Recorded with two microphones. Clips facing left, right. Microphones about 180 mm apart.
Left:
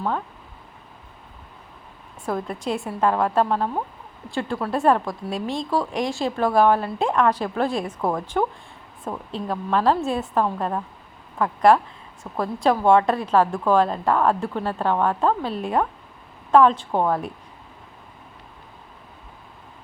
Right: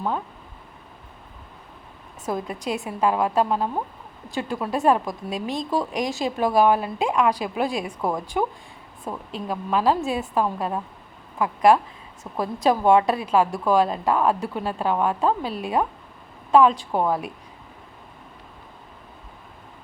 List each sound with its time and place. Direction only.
2.2 s a woman's voice: 15° right (ahead or behind)
9.5 s a woman's voice: 10° right (ahead or behind)